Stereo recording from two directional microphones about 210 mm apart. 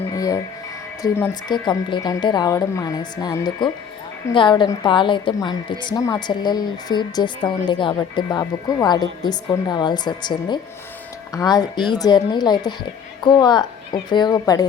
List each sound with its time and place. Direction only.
0.1 s music: 15° left (ahead or behind)
1.0 s a woman's voice: 10° left (ahead or behind)